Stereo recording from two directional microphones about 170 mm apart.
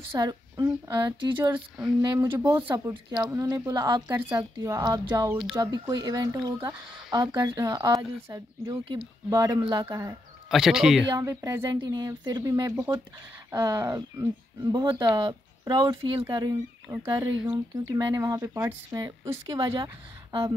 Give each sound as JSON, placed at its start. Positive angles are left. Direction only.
{"t": 0.1, "sound": "a woman's voice", "side_deg": -20}
{"t": 10.5, "sound": "speech", "side_deg": 0}
{"t": 11.1, "sound": "speech", "side_deg": -20}
{"t": 16.3, "sound": "a woman's voice", "side_deg": -20}